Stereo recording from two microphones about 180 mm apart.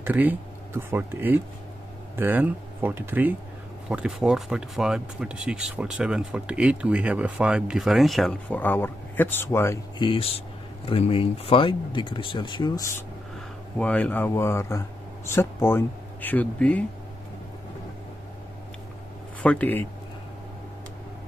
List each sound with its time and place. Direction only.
0.0 s speech: 10° right (ahead or behind); by 9.8 s 15° left (ahead or behind)
9.9 s speech: 30° left (ahead or behind)
13.7 s speech: 5° left (ahead or behind)
19.4 s speech: 10° left (ahead or behind)